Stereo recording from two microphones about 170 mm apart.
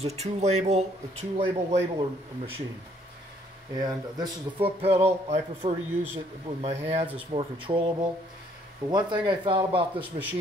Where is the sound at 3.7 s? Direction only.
25° right (ahead or behind).